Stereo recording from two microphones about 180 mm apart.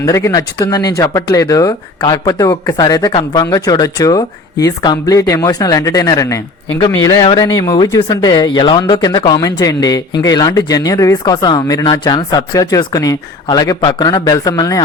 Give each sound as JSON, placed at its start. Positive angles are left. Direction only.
{"t": 0.0, "sound": "speech", "side_deg": 20}